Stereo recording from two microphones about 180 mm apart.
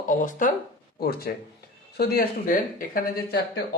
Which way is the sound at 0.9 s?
60° left (ahead or behind).